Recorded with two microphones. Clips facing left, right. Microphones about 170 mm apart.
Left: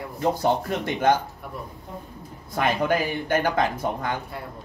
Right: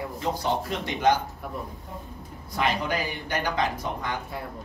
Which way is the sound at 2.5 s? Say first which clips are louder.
Left 4 dB; 50° left (ahead or behind).